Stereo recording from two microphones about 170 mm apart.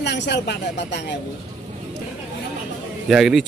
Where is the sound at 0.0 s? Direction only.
90° left.